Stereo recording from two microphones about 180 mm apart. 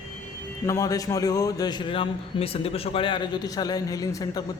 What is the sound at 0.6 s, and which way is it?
A man's voice, 15° left (ahead or behind).